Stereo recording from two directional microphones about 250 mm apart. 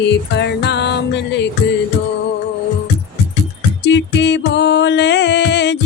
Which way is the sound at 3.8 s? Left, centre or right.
Left.